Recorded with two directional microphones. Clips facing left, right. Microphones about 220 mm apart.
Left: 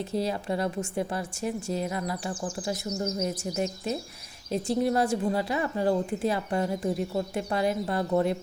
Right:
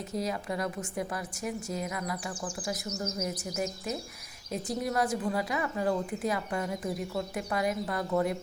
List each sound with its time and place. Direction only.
0.1 s a woman's voice: 30° left (ahead or behind)